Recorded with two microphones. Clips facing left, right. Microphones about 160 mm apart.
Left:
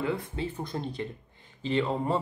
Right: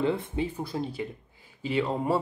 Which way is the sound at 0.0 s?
25° right (ahead or behind).